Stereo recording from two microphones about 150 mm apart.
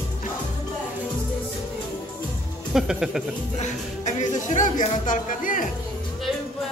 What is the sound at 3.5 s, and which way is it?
Speech, 55° left (ahead or behind).